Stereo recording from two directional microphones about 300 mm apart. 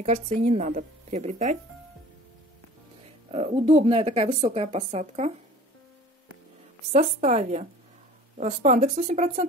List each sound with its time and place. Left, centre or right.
0.0 s speech: right
3.3 s speech: centre
6.9 s speech: right